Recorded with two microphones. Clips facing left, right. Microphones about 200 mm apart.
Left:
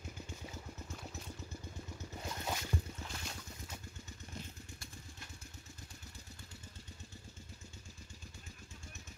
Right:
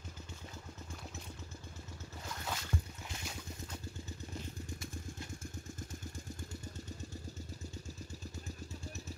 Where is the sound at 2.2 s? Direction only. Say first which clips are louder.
Left 2 dB; 20° left (ahead or behind).